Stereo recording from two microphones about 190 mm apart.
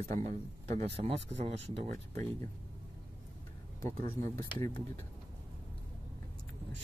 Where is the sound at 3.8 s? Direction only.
45° right (ahead or behind).